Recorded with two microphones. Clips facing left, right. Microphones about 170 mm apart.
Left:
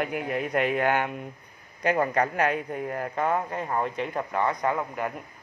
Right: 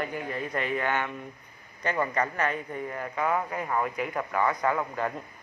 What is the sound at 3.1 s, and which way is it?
Speech, 30° left (ahead or behind).